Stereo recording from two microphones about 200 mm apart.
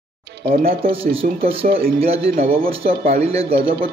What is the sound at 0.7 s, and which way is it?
Speech, 30° right (ahead or behind).